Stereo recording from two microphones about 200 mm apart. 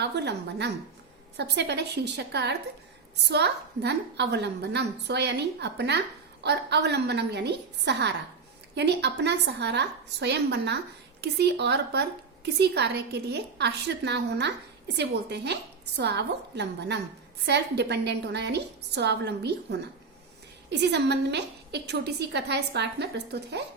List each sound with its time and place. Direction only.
0.0 s a woman's voice: 55° right (ahead or behind)